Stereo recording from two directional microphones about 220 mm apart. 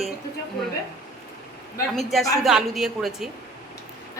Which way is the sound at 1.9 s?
Centre (ahead or behind).